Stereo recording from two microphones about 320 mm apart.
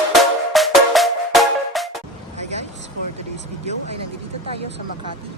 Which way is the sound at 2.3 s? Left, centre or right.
Right.